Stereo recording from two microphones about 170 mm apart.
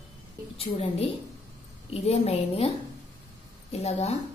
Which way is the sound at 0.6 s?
35° left (ahead or behind).